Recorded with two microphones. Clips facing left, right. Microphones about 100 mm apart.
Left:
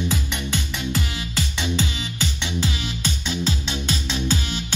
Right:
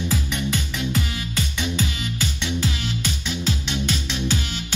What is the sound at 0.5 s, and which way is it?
Music, 25° left (ahead or behind).